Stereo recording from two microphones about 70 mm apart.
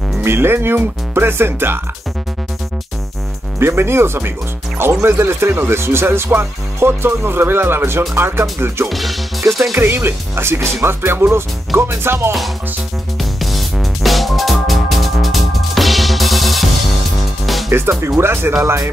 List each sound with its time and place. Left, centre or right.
0.2 s speech: right
3.5 s speech: right
8.8 s speech: centre
9.8 s speech: right
13.2 s music: centre
17.6 s speech: right